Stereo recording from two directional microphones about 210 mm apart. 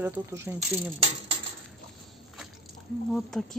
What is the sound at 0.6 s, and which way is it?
Speech, 30° right (ahead or behind).